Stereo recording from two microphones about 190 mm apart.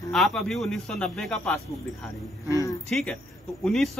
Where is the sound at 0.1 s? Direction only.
Centre (ahead or behind).